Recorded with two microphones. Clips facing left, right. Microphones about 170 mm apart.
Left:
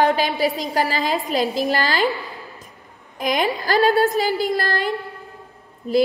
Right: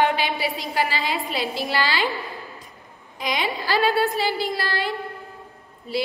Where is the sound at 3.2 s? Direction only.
45° left (ahead or behind).